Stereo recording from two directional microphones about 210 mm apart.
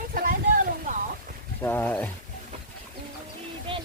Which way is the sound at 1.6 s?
10° left (ahead or behind).